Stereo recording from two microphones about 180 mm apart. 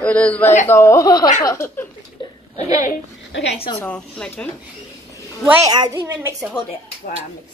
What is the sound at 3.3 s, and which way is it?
Speech, 90° left.